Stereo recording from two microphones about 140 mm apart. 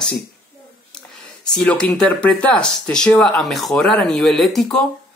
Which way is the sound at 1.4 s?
5° left (ahead or behind).